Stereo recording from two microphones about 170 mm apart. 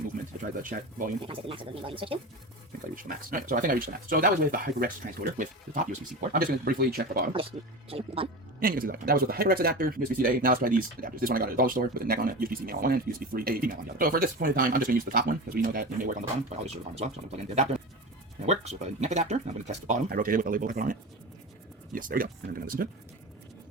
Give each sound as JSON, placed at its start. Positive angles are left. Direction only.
{"t": 0.5, "sound": "speech", "side_deg": -50}
{"t": 1.2, "sound": "speech", "side_deg": -30}
{"t": 2.9, "sound": "speech", "side_deg": -55}
{"t": 7.9, "sound": "speech", "side_deg": -35}
{"t": 8.6, "sound": "speech", "side_deg": -60}
{"t": 16.6, "sound": "speech", "side_deg": -40}
{"t": 20.1, "sound": "speech", "side_deg": -55}